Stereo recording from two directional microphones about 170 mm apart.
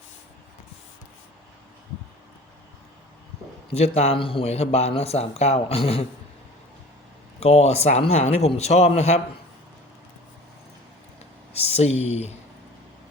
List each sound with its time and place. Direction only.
3.8 s speech: 40° left (ahead or behind)
7.3 s speech: 40° left (ahead or behind)
11.5 s speech: 40° left (ahead or behind)